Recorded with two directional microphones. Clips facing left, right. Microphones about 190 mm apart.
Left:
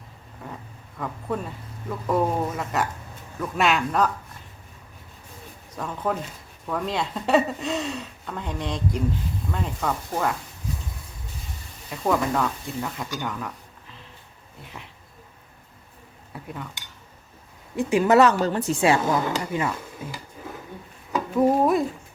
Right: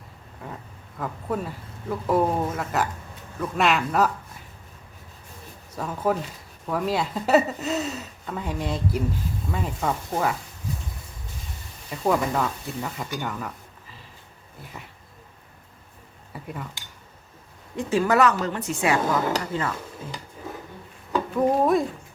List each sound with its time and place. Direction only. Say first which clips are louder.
0.4 s speech: even; centre (ahead or behind)
5.7 s speech: right 2 dB; 5° right (ahead or behind)
11.9 s speech: even; 5° right (ahead or behind)
16.3 s cutlery: even; centre (ahead or behind)
17.7 s a woman's voice: left 3 dB; 15° left (ahead or behind); by 18.9 s 30° left (ahead or behind)
19.5 s speech: left 1 dB; 15° left (ahead or behind)
21.1 s a sound: left 2 dB; 5° left (ahead or behind)